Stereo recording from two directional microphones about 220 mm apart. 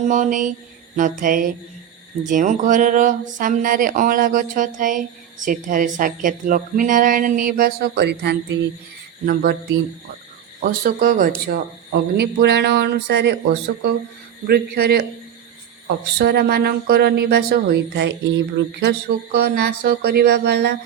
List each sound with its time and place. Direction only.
0.0 s speech: 35° right (ahead or behind)
10.6 s speech: 40° right (ahead or behind)
14.4 s speech: 45° right (ahead or behind)
16.1 s speech: 45° right (ahead or behind)